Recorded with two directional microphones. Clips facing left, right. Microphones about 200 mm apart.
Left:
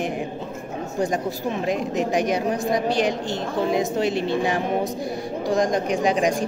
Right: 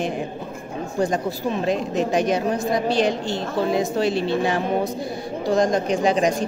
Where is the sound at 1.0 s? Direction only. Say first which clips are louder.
Right 1 dB; 15° left (ahead or behind).